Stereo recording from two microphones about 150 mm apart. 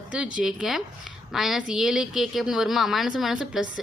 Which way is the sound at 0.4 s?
5° right (ahead or behind).